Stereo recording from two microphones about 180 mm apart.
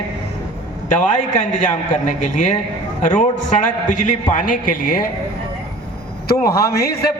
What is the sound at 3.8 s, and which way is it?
A man's voice, 45° left (ahead or behind).